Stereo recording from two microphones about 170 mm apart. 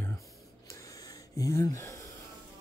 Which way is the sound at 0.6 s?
20° left (ahead or behind).